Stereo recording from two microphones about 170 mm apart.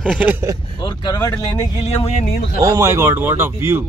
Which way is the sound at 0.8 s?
25° left (ahead or behind).